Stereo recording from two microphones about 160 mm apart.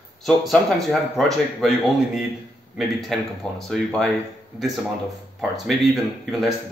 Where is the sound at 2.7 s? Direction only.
Centre (ahead or behind).